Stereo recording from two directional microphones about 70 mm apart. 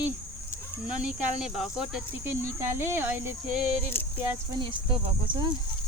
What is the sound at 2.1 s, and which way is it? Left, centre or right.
Speech, right.